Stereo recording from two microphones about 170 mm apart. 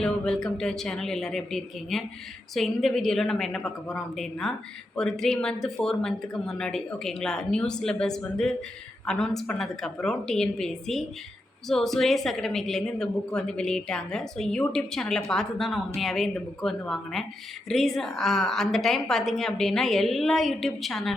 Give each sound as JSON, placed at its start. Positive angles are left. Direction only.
{"t": 0.0, "sound": "a woman's voice", "side_deg": 5}